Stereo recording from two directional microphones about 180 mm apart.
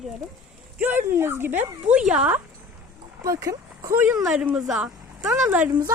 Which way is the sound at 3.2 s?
20° right (ahead or behind).